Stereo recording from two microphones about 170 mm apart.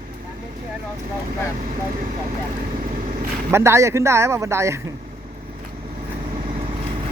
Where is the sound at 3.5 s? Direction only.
15° right (ahead or behind).